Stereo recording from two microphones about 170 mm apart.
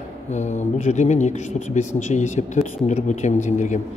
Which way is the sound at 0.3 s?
45° left (ahead or behind).